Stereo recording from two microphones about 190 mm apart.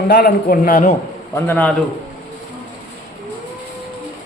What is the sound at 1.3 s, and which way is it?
Speech, 10° left (ahead or behind).